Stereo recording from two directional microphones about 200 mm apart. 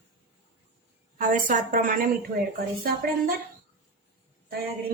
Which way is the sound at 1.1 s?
40° right (ahead or behind).